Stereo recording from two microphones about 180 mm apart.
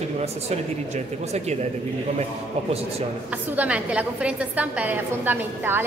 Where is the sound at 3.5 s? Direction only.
5° right (ahead or behind).